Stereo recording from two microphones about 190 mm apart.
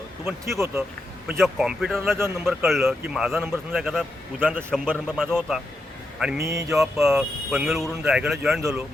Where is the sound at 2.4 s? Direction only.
Centre (ahead or behind).